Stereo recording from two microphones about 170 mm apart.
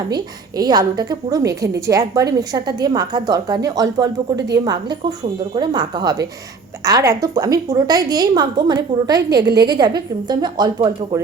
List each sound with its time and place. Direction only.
0.1 s a woman's voice: 25° right (ahead or behind)